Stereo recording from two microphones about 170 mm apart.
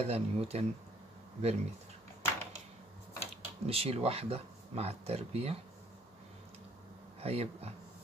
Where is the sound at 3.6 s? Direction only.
35° right (ahead or behind).